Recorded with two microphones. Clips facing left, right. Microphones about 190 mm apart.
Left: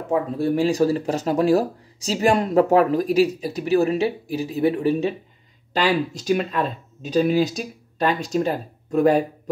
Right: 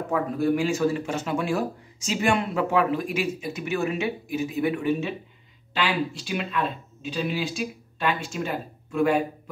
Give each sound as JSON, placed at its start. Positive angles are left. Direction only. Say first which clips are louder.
{"t": 0.1, "sound": "speech", "louder": "left 3 dB", "side_deg": 35}